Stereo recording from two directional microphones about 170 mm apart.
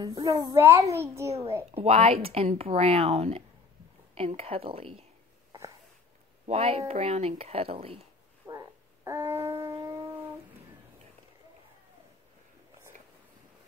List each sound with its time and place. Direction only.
0.0 s a child's voice: 20° right (ahead or behind)
1.7 s speech: 35° right (ahead or behind)
6.4 s speech: 35° right (ahead or behind)
8.5 s shofar: 20° right (ahead or behind)